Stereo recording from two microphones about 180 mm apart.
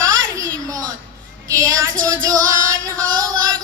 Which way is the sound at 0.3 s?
20° right (ahead or behind).